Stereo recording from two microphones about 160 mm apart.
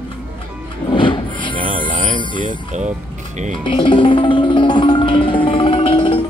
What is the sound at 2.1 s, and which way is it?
Speech, 30° left (ahead or behind).